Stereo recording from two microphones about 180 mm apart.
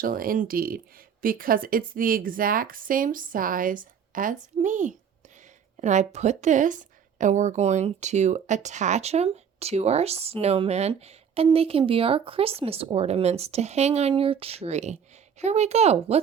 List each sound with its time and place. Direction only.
0.0 s speech: 50° right (ahead or behind); by 16.2 s 35° right (ahead or behind)